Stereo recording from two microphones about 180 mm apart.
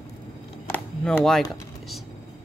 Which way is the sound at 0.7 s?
5° left (ahead or behind).